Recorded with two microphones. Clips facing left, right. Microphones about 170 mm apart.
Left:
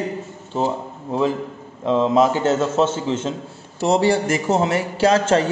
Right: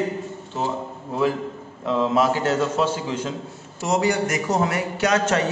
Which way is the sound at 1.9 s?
25° left (ahead or behind).